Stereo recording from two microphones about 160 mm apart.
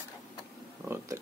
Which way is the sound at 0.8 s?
15° right (ahead or behind).